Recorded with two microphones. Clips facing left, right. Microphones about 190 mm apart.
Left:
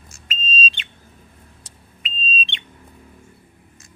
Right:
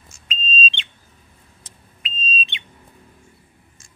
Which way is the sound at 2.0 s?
Centre (ahead or behind).